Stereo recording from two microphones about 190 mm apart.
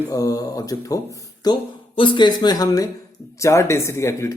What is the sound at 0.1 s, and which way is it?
Speech, 20° left (ahead or behind).